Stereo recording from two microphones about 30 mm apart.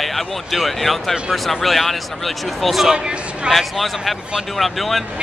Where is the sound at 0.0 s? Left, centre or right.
Centre.